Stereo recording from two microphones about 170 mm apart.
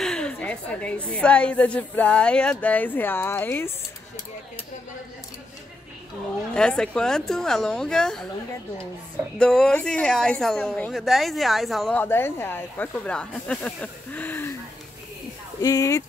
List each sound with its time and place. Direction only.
0.0 s a woman's voice: 5° left (ahead or behind)
6.5 s a woman's voice: 5° left (ahead or behind)
9.4 s a woman's voice: 5° left (ahead or behind)
12.0 s a woman's voice: 10° left (ahead or behind)
15.6 s speech: 20° left (ahead or behind)